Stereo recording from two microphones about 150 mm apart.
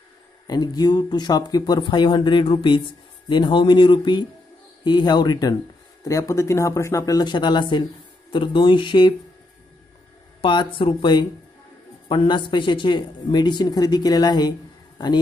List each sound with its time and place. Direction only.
0.5 s speech: 25° left (ahead or behind)
10.4 s speech: 30° left (ahead or behind)